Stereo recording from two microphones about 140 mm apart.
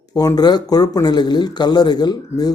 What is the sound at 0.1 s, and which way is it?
Speech, 25° left (ahead or behind).